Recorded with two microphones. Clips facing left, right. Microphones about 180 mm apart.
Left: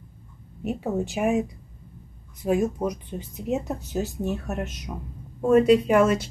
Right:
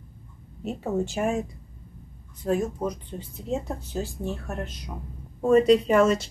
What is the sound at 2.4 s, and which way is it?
Speech, 15° left (ahead or behind).